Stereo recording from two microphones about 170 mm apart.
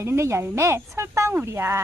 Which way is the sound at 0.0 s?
15° right (ahead or behind).